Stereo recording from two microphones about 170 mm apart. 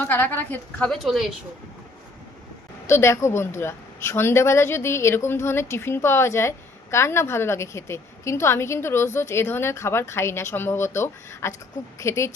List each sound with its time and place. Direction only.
0.0 s a woman's voice: 10° left (ahead or behind)
0.9 s speech: centre (ahead or behind)
2.8 s a woman's voice: 15° left (ahead or behind)